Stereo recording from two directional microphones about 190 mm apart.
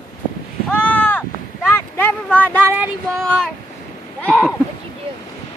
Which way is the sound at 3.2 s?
5° left (ahead or behind).